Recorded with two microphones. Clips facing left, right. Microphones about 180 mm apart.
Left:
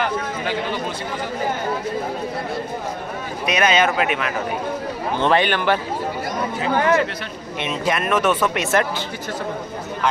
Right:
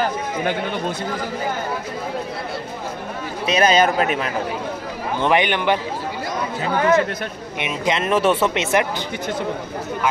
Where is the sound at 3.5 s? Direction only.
35° right (ahead or behind).